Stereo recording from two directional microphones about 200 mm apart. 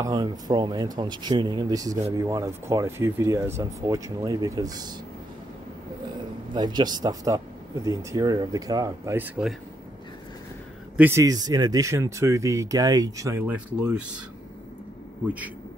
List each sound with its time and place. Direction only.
0.0 s speech: 20° right (ahead or behind)
6.5 s speech: 20° right (ahead or behind); by 9.6 s 5° right (ahead or behind)
11.0 s speech: 15° right (ahead or behind)